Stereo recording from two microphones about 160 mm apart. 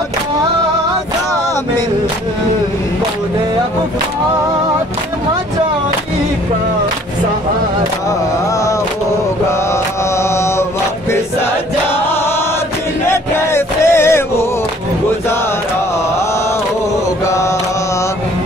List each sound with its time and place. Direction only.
10.1 s chant: 15° left (ahead or behind)
13.1 s chant: 15° left (ahead or behind)